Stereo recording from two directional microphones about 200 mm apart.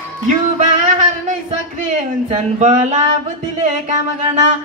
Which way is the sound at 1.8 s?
40° right (ahead or behind).